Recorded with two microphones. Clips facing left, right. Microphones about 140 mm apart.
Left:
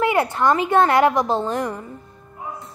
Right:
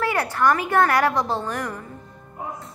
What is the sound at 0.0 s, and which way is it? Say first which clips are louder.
A woman's voice: left 3 dB; 20° left (ahead or behind).